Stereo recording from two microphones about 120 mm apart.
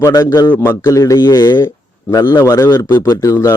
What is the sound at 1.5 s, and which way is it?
A man's voice, 20° left (ahead or behind).